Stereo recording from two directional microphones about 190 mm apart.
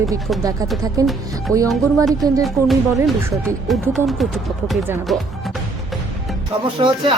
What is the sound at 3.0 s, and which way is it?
Speech, 10° right (ahead or behind).